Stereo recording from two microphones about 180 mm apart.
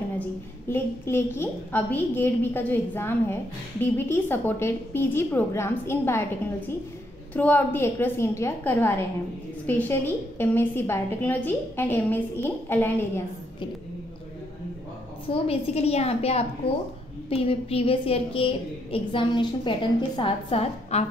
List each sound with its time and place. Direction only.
0.2 s a woman's voice: 10° left (ahead or behind)
7.3 s a woman's voice: 10° left (ahead or behind)
15.2 s a woman's voice: 30° left (ahead or behind)